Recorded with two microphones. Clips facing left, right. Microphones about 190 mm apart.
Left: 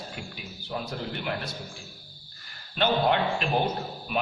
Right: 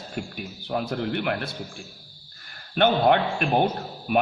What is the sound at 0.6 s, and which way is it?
Speech, 60° right (ahead or behind).